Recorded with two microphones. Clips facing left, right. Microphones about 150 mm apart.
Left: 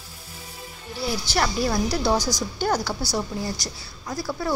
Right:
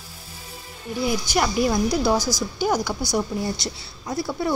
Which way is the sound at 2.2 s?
15° left (ahead or behind).